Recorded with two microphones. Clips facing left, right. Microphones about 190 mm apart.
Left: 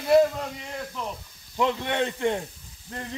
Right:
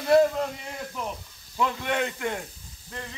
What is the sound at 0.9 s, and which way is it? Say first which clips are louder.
Speech: even; 5° right (ahead or behind).